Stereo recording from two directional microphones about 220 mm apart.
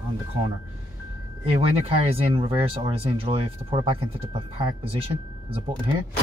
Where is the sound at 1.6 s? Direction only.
25° right (ahead or behind).